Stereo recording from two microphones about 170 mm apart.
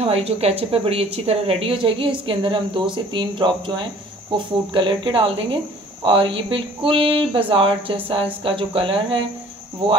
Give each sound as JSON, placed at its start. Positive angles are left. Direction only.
{"t": 0.0, "sound": "a woman's voice", "side_deg": -35}